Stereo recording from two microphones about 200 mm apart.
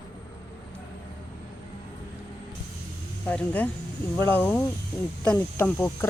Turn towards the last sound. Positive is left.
turn(degrees=10)  # may be behind; listen again after turning